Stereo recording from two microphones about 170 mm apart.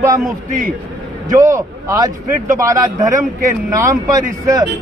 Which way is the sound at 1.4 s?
20° right (ahead or behind).